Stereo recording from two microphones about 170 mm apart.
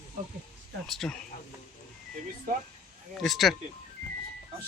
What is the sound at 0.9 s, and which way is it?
Speech, centre (ahead or behind).